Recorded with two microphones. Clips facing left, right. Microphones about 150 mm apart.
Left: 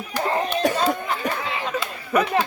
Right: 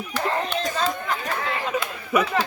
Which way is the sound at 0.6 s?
65° left (ahead or behind).